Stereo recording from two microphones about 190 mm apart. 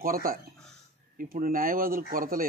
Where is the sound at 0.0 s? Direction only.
50° right (ahead or behind).